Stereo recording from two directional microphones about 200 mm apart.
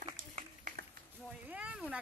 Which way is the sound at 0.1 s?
45° right (ahead or behind).